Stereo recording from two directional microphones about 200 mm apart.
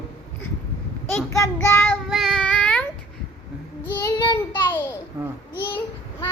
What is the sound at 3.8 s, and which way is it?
A child's voice, 15° left (ahead or behind).